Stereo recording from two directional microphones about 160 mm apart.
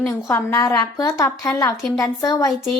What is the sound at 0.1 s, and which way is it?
A woman's voice, 15° left (ahead or behind).